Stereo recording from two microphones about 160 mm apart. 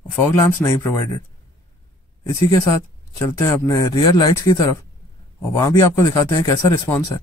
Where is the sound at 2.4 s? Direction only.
20° left (ahead or behind).